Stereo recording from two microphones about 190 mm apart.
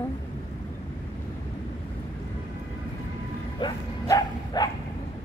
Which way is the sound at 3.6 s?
20° left (ahead or behind).